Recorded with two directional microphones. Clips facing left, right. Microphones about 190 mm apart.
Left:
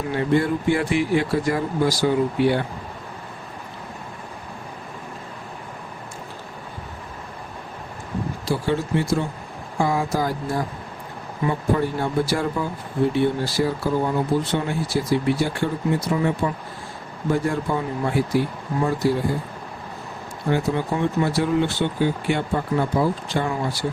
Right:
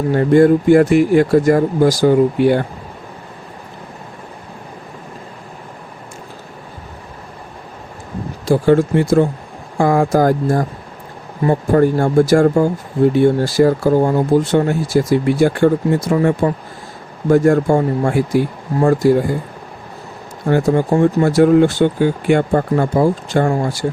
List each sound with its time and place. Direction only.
0.1 s speech: 45° right (ahead or behind)
8.4 s speech: 50° right (ahead or behind)
20.5 s speech: 45° right (ahead or behind)